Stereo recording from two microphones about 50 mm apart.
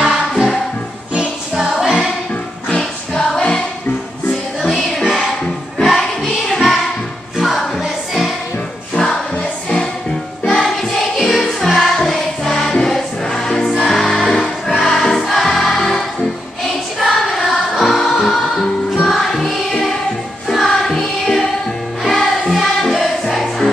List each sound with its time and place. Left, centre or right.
1.6 s music: centre
2.8 s music: centre
8.9 s music: centre
10.4 s music: centre
17.0 s music: centre